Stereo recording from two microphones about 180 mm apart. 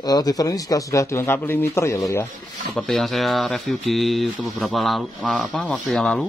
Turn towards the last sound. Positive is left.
turn(degrees=5)  # may be behind; listen again after turning